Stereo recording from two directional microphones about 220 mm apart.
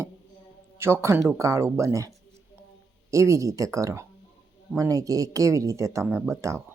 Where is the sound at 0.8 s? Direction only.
10° right (ahead or behind).